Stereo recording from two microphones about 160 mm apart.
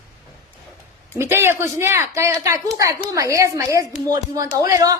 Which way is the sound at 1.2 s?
15° right (ahead or behind).